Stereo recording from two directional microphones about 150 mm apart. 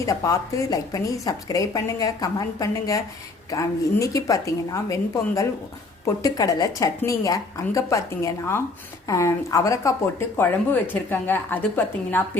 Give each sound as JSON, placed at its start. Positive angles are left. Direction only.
{"t": 0.0, "sound": "a woman's voice", "side_deg": 20}